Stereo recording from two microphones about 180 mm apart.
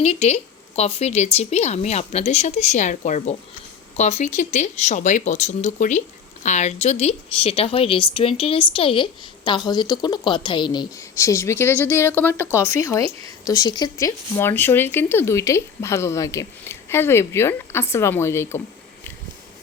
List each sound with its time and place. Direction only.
0.0 s speech: 35° left (ahead or behind); by 18.6 s 15° left (ahead or behind)